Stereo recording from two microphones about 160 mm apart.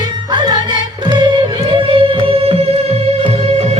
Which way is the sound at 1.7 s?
35° right (ahead or behind).